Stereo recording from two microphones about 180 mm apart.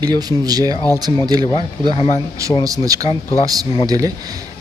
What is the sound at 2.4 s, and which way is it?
Speech, 15° right (ahead or behind).